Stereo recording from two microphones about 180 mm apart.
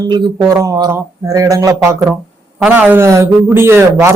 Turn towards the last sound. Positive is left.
turn(degrees=-15)  # may be behind; listen again after turning